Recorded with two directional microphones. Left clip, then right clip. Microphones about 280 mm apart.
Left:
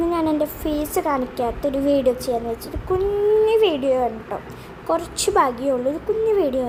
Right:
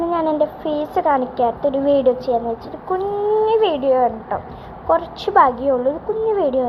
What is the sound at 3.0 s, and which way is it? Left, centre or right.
Speech, left.